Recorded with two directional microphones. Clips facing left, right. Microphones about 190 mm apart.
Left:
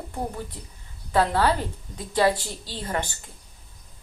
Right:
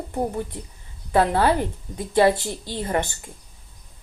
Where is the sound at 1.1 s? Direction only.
20° right (ahead or behind).